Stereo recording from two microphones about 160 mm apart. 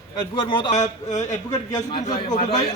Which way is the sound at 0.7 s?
45° left (ahead or behind).